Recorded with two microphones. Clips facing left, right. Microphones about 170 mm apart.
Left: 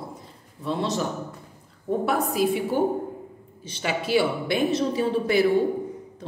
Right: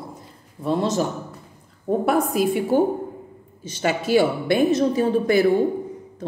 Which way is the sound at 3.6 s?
45° right (ahead or behind).